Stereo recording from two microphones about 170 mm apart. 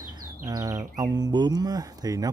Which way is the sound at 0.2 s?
20° right (ahead or behind).